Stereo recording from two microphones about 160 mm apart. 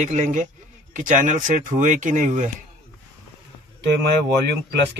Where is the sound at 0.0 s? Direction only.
45° right (ahead or behind).